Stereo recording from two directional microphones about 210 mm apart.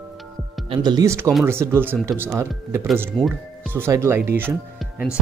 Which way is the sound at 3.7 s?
10° right (ahead or behind).